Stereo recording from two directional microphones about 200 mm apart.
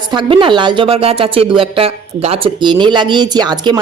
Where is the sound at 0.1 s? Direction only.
25° right (ahead or behind).